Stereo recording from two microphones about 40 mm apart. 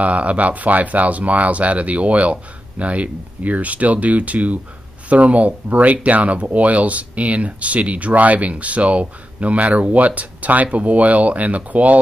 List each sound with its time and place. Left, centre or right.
0.0 s speech: right